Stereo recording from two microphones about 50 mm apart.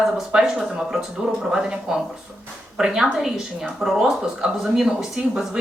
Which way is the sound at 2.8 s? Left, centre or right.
Centre.